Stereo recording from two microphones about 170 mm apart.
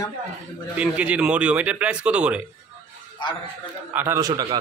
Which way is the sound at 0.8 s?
5° right (ahead or behind).